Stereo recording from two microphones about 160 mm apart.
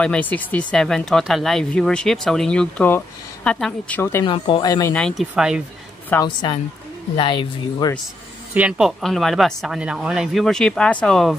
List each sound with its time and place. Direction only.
0.0 s speech: 10° left (ahead or behind)
4.0 s speech: 15° left (ahead or behind)
4.3 s speech: 30° left (ahead or behind)
4.9 s speech: 5° left (ahead or behind)
6.2 s speech: 30° left (ahead or behind)
8.5 s speech: 5° right (ahead or behind)